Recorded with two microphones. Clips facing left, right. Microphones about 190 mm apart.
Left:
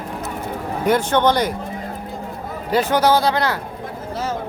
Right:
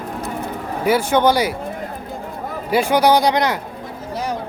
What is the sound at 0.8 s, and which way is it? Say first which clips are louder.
Speech: right 1 dB; 5° right (ahead or behind).